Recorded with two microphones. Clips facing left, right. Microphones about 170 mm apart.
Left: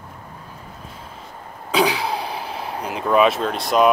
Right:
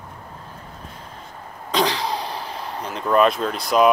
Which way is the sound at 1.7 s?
10° left (ahead or behind).